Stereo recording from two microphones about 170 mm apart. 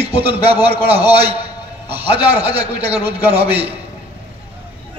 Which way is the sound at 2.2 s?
35° right (ahead or behind).